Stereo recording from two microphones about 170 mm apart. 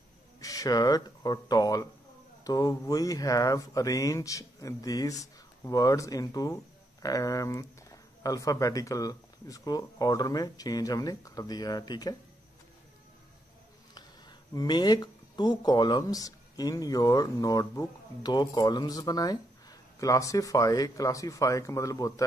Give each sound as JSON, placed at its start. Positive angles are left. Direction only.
{"t": 0.4, "sound": "speech", "side_deg": 20}
{"t": 14.5, "sound": "speech", "side_deg": 25}